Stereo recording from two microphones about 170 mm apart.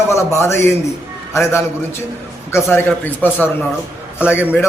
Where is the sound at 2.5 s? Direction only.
15° left (ahead or behind).